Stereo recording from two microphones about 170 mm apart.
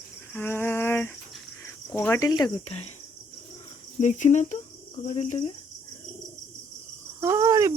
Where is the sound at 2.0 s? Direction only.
15° left (ahead or behind).